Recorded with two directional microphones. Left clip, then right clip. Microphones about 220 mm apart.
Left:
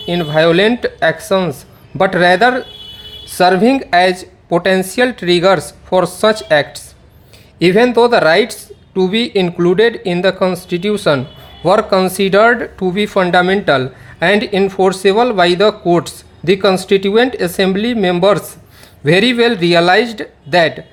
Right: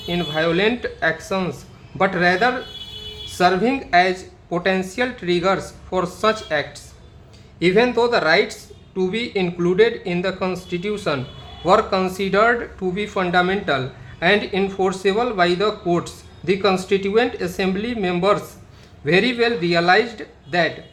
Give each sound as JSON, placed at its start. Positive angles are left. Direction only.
{"t": 0.0, "sound": "speech", "side_deg": 30}